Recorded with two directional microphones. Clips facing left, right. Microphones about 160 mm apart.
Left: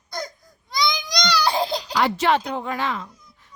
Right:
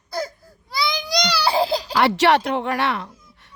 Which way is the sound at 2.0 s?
75° right (ahead or behind).